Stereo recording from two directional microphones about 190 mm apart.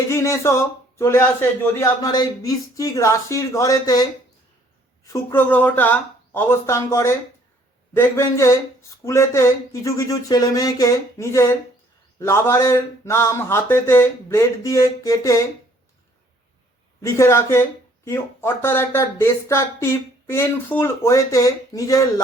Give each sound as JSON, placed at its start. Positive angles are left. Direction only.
{"t": 0.1, "sound": "speech", "side_deg": 15}
{"t": 5.0, "sound": "speech", "side_deg": 15}
{"t": 17.0, "sound": "speech", "side_deg": 15}